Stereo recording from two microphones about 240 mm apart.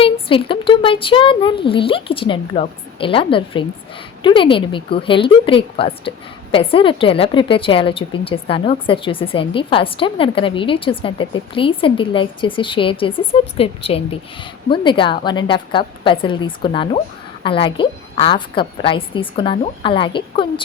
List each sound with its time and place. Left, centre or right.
0.0 s a woman's voice: left